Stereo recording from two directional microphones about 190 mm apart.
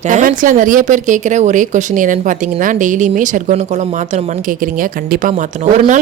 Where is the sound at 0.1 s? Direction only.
45° right (ahead or behind).